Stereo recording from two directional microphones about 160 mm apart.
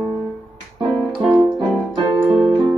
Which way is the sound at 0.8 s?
Centre (ahead or behind).